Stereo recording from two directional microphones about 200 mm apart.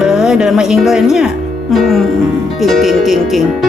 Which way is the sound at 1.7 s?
Centre (ahead or behind).